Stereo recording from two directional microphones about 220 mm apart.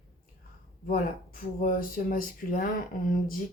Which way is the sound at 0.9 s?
40° left (ahead or behind).